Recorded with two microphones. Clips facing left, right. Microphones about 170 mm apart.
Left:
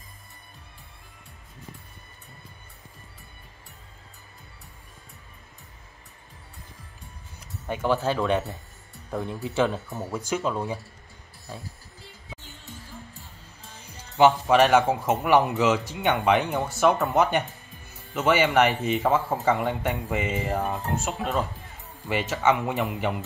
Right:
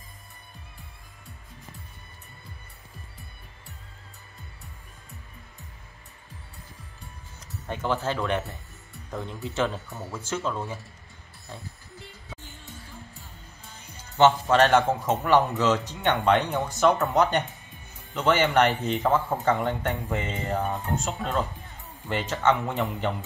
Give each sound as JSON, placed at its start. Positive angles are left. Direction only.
{"t": 7.3, "sound": "speech", "side_deg": 10}
{"t": 14.1, "sound": "speech", "side_deg": 10}